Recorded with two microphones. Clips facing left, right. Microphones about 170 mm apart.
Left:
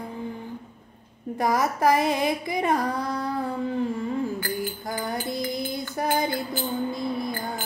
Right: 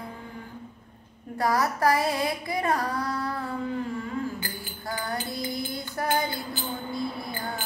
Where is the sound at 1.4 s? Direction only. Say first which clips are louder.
Left 2 dB; 20° left (ahead or behind).